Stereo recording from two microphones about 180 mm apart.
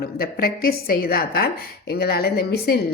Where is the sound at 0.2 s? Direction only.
55° left (ahead or behind).